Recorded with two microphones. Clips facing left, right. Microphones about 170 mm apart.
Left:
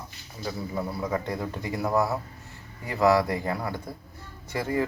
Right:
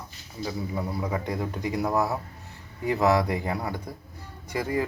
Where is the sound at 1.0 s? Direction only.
15° right (ahead or behind).